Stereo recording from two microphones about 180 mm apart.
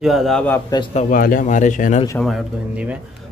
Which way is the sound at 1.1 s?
50° left (ahead or behind).